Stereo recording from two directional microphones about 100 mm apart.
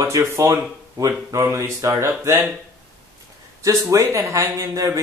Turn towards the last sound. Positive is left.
turn(degrees=-30)  # may be behind; listen again after turning